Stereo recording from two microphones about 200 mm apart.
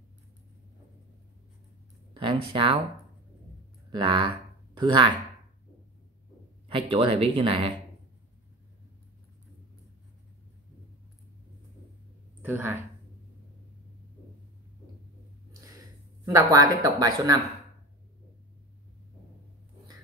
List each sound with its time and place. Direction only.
2.5 s speech: 25° right (ahead or behind)
3.9 s speech: 25° right (ahead or behind)
6.7 s speech: 25° right (ahead or behind)
12.4 s speech: 10° right (ahead or behind)
16.3 s speech: 15° right (ahead or behind)